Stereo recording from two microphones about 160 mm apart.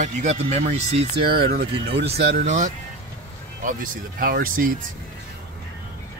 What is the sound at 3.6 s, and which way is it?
Speech, 60° right (ahead or behind).